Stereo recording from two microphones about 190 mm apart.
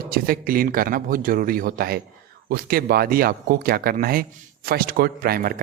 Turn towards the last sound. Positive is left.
turn(degrees=-50)  # may be behind; listen again after turning